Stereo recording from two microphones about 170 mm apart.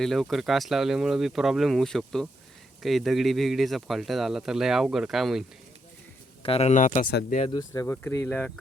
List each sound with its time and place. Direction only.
0.0 s speech: centre (ahead or behind)
6.4 s speech: 35° left (ahead or behind)
7.5 s speech: 20° left (ahead or behind)